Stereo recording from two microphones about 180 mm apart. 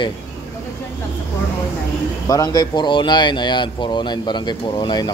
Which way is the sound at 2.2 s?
20° left (ahead or behind).